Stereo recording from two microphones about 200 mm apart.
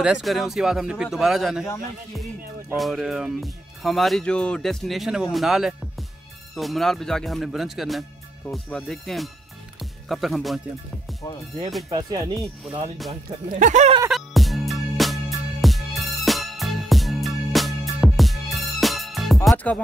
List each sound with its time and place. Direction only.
0.0 s speech: centre (ahead or behind)
2.8 s speech: centre (ahead or behind)
11.9 s speech: 20° right (ahead or behind)
13.5 s speech: 40° right (ahead or behind)
14.0 s music: centre (ahead or behind)